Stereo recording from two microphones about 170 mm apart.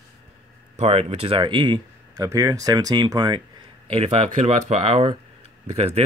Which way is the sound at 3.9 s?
35° right (ahead or behind).